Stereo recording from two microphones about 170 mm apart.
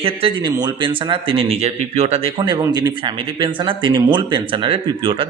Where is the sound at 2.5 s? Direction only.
25° right (ahead or behind).